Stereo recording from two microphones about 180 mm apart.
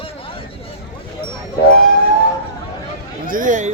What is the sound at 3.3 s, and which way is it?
Speech, 45° right (ahead or behind).